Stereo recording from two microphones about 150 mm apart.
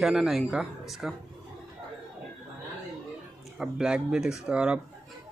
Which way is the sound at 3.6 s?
5° right (ahead or behind).